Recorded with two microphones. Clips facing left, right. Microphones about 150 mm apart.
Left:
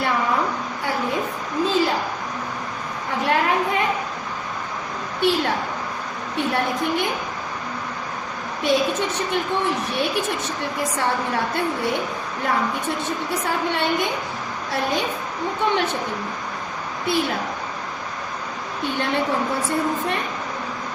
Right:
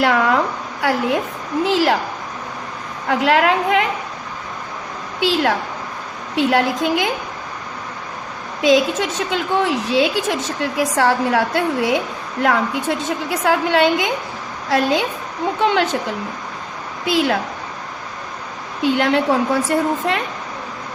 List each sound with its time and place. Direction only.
0.0 s a sound: 85° right
0.8 s a woman's voice: 80° right
3.1 s a woman's voice: 90° right
5.2 s a woman's voice: 90° right
8.6 s a woman's voice: 90° right
17.1 s a woman's voice: 90° right
18.8 s a woman's voice: 90° right